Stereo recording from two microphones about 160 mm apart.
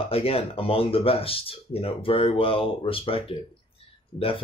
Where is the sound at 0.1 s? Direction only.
40° left (ahead or behind).